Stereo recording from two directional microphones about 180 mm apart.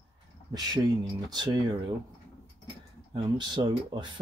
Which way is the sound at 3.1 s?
25° right (ahead or behind).